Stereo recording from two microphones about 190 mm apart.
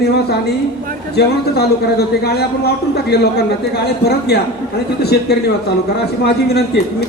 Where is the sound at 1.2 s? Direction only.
55° left (ahead or behind).